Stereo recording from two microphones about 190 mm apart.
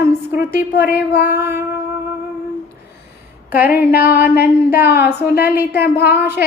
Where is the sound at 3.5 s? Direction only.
55° left (ahead or behind).